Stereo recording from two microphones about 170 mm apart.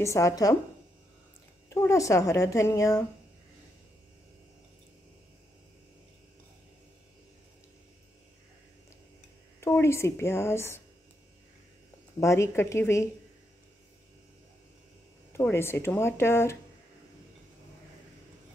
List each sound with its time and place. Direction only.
0.0 s speech: 20° left (ahead or behind)
1.7 s speech: 15° left (ahead or behind)
9.6 s speech: 15° left (ahead or behind)
12.2 s speech: 15° left (ahead or behind)
15.4 s speech: 15° left (ahead or behind)